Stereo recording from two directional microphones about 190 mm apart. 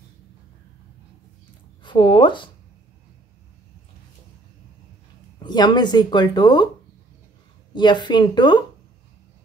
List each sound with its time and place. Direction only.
1.8 s speech: 25° left (ahead or behind)
5.4 s speech: 25° left (ahead or behind)
7.7 s speech: 25° left (ahead or behind)